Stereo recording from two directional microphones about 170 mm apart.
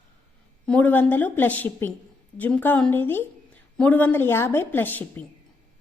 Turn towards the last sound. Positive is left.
turn(degrees=10)  # may be behind; listen again after turning